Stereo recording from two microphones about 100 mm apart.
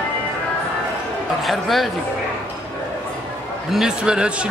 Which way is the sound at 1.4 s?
Centre (ahead or behind).